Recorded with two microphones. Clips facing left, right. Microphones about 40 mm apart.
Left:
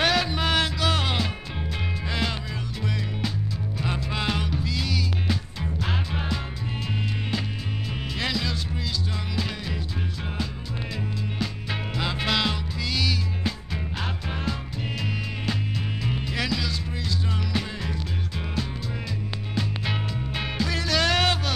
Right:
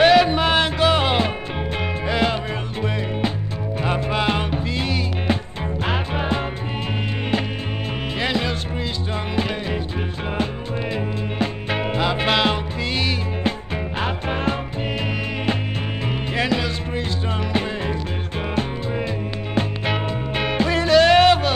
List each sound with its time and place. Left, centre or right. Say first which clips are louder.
0.0 s music: right 9 dB; right
3.8 s music: right 7 dB; right
8.2 s music: right 5 dB; right
11.3 s music: right 10 dB; right
12.0 s music: right 5 dB; right
16.3 s music: right 8 dB; right
19.5 s music: right 7 dB; right